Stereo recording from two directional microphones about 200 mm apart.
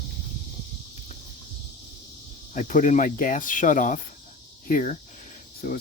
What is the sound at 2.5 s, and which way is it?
Speech, 40° left (ahead or behind).